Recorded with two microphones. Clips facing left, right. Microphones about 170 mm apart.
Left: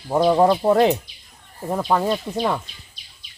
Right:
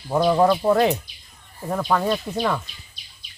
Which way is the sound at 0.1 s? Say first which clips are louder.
Left 2 dB; 25° left (ahead or behind).